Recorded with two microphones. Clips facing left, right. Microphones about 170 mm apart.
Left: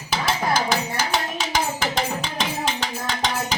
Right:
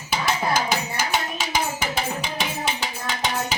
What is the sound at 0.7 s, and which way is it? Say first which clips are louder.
Music: left 1 dB; 10° right (ahead or behind).